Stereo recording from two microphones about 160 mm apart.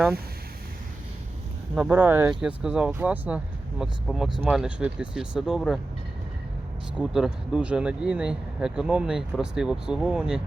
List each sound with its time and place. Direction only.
1.7 s speech: 10° right (ahead or behind)
6.9 s speech: 5° right (ahead or behind)